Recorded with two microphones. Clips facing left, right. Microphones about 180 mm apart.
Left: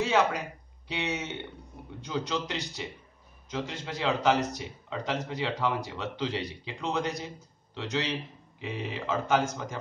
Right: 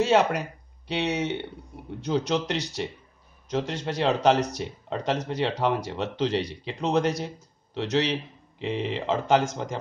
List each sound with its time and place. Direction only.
0.0 s speech: 70° right (ahead or behind)